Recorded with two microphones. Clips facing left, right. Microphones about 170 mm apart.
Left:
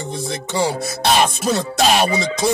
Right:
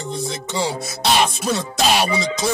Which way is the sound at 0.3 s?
55° left (ahead or behind).